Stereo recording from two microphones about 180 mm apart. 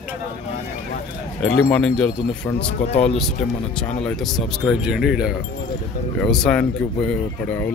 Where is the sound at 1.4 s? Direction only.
10° left (ahead or behind).